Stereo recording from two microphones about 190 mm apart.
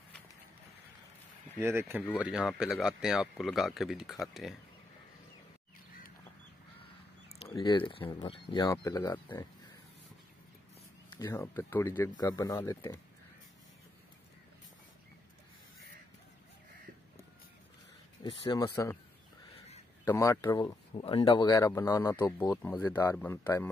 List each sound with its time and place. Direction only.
1.6 s speech: 10° right (ahead or behind)
7.5 s speech: 25° left (ahead or behind)
8.7 s speech: 15° left (ahead or behind)
11.1 s speech: 15° left (ahead or behind)
18.2 s speech: 25° left (ahead or behind)
18.6 s speech: 15° left (ahead or behind)
20.1 s speech: 15° left (ahead or behind)